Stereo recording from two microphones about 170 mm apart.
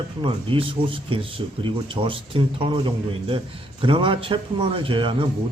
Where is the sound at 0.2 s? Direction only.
30° right (ahead or behind).